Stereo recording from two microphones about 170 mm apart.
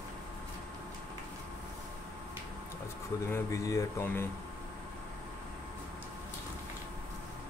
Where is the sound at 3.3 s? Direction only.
20° left (ahead or behind).